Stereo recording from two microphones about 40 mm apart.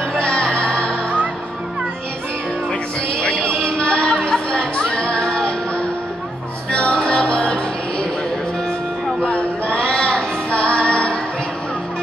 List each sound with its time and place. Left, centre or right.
0.1 s music: left
2.7 s music: left
9.3 s music: left